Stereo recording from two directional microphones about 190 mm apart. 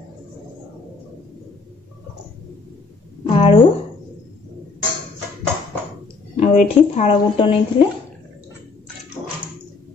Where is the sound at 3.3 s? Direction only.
30° left (ahead or behind).